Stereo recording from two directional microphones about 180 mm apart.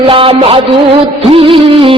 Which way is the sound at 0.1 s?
30° right (ahead or behind).